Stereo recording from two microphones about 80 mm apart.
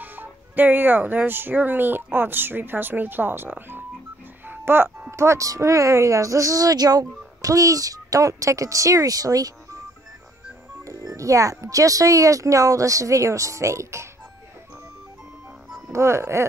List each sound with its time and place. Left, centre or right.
0.0 s speech: right
4.5 s music: right
5.1 s speech: right
10.9 s speech: right
15.9 s music: right